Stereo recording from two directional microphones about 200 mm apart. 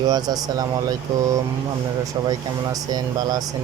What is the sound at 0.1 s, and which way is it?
Speech, 20° right (ahead or behind).